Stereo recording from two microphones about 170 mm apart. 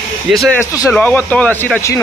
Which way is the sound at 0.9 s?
10° left (ahead or behind).